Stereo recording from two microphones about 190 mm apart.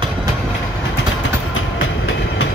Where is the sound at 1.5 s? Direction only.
90° left.